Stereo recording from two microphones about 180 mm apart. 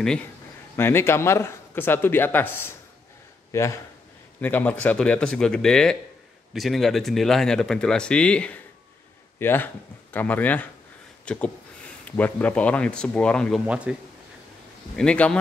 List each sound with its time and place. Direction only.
0.7 s speech: 15° left (ahead or behind)
13.7 s speech: 5° right (ahead or behind)
15.0 s speech: 5° left (ahead or behind)